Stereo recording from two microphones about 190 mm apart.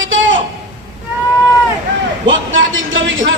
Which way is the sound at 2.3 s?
90° right.